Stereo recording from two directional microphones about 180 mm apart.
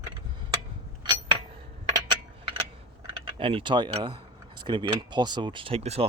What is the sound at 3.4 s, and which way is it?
Speech, 30° right (ahead or behind).